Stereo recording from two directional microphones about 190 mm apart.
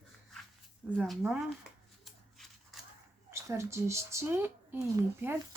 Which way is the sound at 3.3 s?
15° right (ahead or behind).